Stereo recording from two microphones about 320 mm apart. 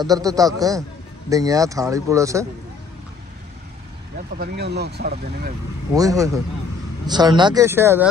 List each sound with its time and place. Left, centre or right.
0.0 s speech: centre
4.4 s speech: right
5.9 s speech: centre